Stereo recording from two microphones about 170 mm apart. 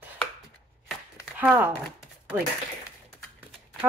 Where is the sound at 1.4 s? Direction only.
10° right (ahead or behind).